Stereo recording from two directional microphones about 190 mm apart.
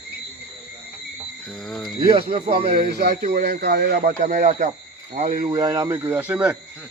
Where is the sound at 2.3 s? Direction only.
30° right (ahead or behind).